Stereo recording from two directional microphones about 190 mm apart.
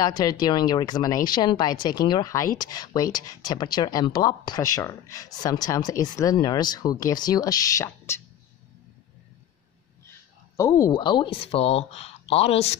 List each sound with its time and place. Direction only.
0.0 s speech: 20° left (ahead or behind)
10.0 s speech: 15° left (ahead or behind); by 12.7 s 35° left (ahead or behind)